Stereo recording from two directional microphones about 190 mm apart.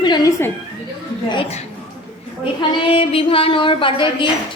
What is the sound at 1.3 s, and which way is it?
Speech, 30° left (ahead or behind).